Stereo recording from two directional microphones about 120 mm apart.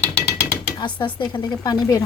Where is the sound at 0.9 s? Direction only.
40° left (ahead or behind).